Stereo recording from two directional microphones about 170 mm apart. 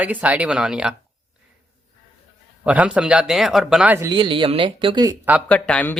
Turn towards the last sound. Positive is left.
turn(degrees=5)  # may be behind; listen again after turning